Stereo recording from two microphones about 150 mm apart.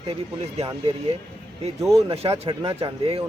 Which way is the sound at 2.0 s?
40° right (ahead or behind).